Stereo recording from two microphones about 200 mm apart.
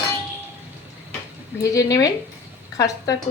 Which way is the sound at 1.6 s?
15° left (ahead or behind).